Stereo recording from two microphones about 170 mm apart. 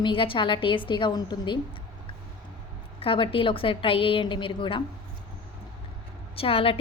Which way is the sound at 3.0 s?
30° left (ahead or behind).